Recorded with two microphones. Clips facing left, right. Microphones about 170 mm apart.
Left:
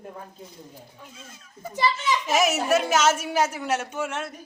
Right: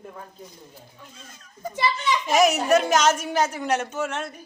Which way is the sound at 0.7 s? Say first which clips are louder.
Left 1 dB; 5° left (ahead or behind).